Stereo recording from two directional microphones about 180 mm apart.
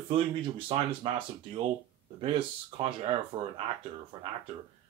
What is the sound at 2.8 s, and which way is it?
Speech, 30° right (ahead or behind).